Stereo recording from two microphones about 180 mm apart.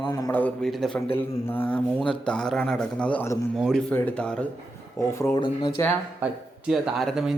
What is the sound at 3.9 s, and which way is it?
Speech, 5° left (ahead or behind).